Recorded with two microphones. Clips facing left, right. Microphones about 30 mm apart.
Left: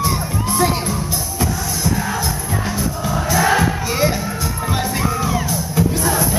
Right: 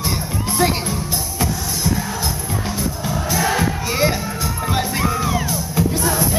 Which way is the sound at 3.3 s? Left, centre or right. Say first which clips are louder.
Left 4 dB; centre.